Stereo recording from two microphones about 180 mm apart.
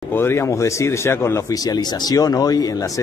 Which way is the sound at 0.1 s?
15° left (ahead or behind).